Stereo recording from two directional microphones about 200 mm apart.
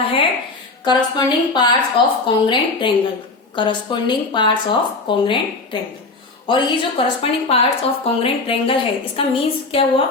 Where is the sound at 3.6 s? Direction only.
25° left (ahead or behind).